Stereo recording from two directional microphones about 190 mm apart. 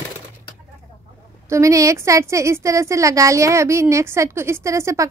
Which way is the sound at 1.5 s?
15° right (ahead or behind).